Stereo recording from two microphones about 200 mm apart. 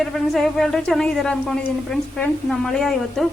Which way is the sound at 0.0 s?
Centre (ahead or behind).